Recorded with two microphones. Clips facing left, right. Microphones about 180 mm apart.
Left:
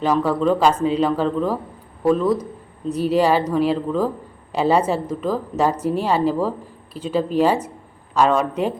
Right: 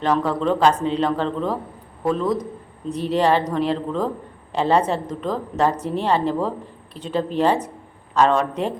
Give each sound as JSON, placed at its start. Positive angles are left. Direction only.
{"t": 0.0, "sound": "speech", "side_deg": 5}